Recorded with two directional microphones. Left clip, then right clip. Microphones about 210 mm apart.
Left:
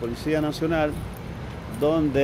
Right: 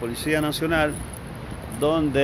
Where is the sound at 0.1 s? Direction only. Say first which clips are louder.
Right 3 dB; centre (ahead or behind).